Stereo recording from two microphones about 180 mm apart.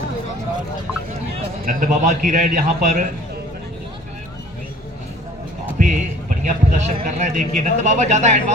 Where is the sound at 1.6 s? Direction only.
45° right (ahead or behind).